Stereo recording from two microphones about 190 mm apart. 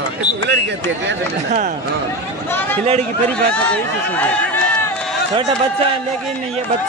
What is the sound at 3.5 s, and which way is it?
Speech, 10° left (ahead or behind).